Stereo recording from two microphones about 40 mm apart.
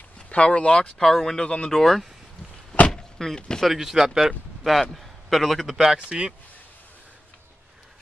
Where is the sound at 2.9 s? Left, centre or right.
Centre.